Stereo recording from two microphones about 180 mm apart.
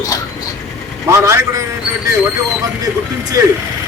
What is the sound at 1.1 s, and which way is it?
Speech, 15° right (ahead or behind).